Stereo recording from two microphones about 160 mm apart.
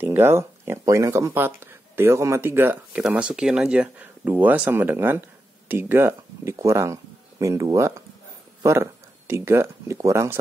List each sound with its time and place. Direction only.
0.0 s speech: 15° right (ahead or behind)
9.3 s speech: 15° right (ahead or behind)